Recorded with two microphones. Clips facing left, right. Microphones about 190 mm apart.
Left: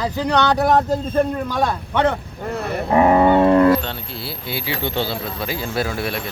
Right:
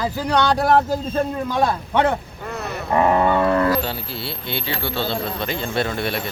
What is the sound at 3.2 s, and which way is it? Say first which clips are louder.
Cattle: left 5 dB; 20° left (ahead or behind).